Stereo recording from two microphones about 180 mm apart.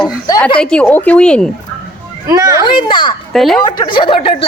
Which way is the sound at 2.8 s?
25° left (ahead or behind).